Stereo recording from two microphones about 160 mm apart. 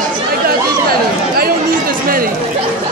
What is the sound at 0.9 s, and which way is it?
Chatter, 70° right (ahead or behind).